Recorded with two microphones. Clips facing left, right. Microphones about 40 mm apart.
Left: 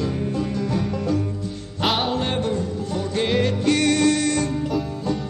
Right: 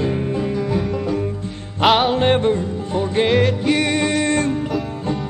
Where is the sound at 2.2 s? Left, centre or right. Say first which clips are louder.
Right 7 dB; right.